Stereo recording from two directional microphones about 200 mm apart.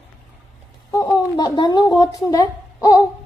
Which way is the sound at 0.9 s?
15° left (ahead or behind).